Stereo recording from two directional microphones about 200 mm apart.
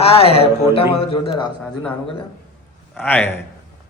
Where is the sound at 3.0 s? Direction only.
10° left (ahead or behind).